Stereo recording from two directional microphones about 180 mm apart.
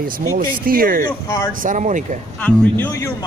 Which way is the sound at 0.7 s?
55° right (ahead or behind).